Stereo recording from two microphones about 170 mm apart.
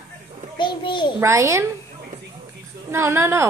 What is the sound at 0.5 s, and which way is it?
Speech, 30° left (ahead or behind).